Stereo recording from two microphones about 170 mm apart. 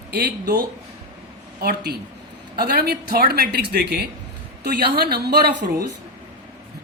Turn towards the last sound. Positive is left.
turn(degrees=-70)  # may be behind; listen again after turning